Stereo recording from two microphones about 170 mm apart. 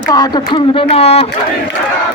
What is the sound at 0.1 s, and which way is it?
Speech, 25° left (ahead or behind).